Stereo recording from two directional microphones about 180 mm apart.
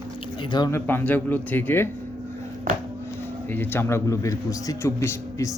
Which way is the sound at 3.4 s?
10° left (ahead or behind).